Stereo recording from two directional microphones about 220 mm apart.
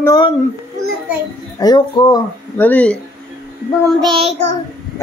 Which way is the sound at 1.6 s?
20° left (ahead or behind).